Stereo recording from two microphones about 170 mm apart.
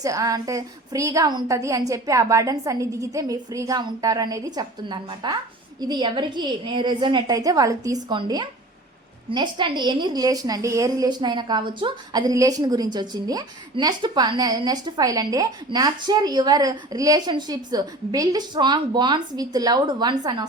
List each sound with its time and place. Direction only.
0.0 s a woman's voice: 20° right (ahead or behind)